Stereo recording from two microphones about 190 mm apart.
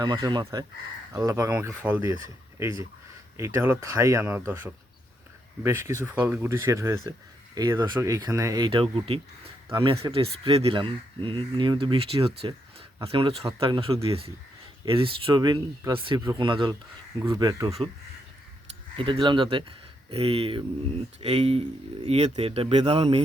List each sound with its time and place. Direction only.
0.0 s speech: 20° right (ahead or behind)
18.9 s speech: 25° right (ahead or behind)